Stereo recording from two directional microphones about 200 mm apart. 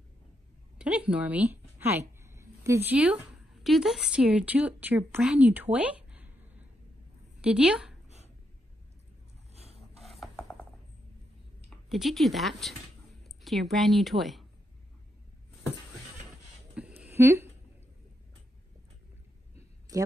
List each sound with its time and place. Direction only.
0.7 s a woman's voice: 5° right (ahead or behind)
7.4 s a woman's voice: 5° right (ahead or behind)
9.5 s rub: 30° right (ahead or behind)
9.9 s filing: centre (ahead or behind)
11.7 s speech: centre (ahead or behind)
16.8 s a sound: 5° right (ahead or behind)
17.2 s speech: 10° right (ahead or behind)